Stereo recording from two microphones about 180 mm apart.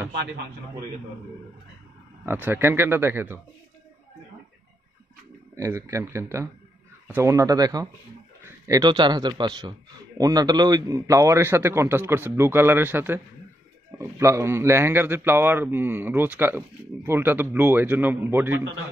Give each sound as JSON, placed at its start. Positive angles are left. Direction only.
{"t": 2.2, "sound": "a man's voice", "side_deg": -10}
{"t": 5.6, "sound": "a man's voice", "side_deg": -15}